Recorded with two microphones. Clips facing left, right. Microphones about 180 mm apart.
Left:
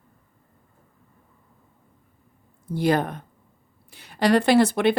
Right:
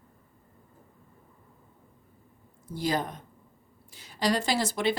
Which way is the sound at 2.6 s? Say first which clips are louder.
Left 7 dB; 60° left (ahead or behind).